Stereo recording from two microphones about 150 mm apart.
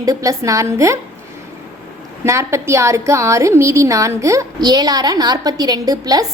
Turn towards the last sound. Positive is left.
turn(degrees=-25)  # may be behind; listen again after turning